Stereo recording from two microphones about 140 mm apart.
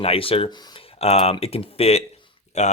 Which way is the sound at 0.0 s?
40° left (ahead or behind).